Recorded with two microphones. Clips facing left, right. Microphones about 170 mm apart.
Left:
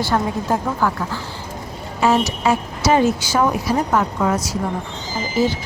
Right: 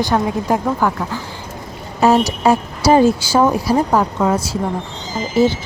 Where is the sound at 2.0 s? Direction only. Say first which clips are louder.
Right 4 dB; 40° right (ahead or behind).